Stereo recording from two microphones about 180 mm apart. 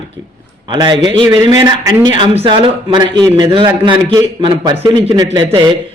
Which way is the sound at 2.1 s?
30° right (ahead or behind).